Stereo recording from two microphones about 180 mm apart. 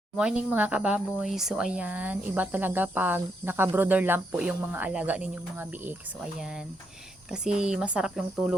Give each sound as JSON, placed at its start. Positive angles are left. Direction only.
{"t": 0.2, "sound": "speech", "side_deg": -5}
{"t": 7.3, "sound": "speech", "side_deg": -5}